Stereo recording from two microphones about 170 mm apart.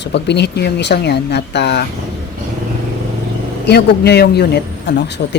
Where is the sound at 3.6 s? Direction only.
75° left (ahead or behind).